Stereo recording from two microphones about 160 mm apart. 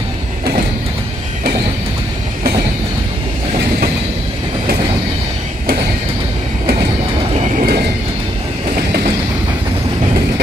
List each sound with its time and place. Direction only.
7.3 s vehicle: 45° right (ahead or behind)